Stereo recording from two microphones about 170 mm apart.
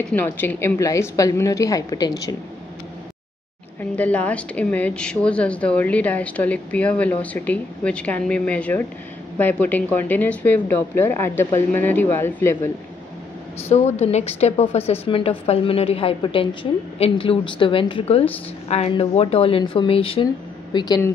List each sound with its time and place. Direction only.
0.1 s a woman's voice: 10° left (ahead or behind)
3.9 s speech: 10° left (ahead or behind)
13.7 s a woman's voice: 40° left (ahead or behind); by 21.1 s 25° left (ahead or behind)